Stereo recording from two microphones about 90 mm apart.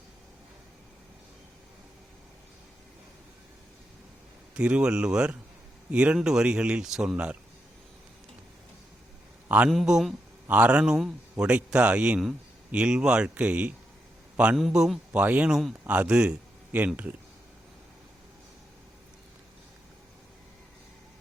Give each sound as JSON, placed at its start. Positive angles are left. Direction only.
{"t": 4.5, "sound": "speech", "side_deg": -10}
{"t": 9.6, "sound": "a man's voice", "side_deg": -5}
{"t": 10.5, "sound": "speech", "side_deg": -15}
{"t": 14.5, "sound": "a man's voice", "side_deg": -5}